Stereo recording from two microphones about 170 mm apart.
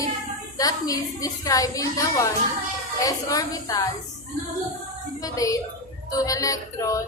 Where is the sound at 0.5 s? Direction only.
20° left (ahead or behind).